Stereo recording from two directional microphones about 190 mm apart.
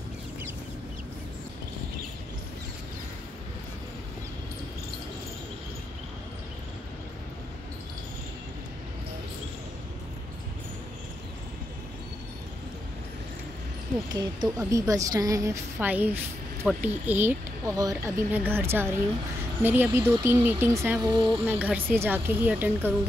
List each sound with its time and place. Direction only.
14.1 s speech: 20° right (ahead or behind)